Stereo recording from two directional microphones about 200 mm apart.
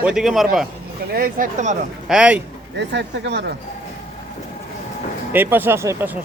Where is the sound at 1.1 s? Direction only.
45° right (ahead or behind).